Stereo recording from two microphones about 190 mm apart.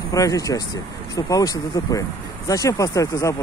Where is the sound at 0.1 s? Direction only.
20° left (ahead or behind).